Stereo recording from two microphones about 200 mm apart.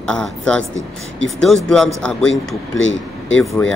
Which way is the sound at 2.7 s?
70° left (ahead or behind).